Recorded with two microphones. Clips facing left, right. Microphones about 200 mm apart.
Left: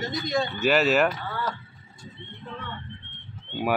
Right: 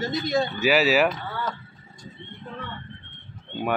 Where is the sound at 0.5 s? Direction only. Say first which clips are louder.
Even; 5° right (ahead or behind).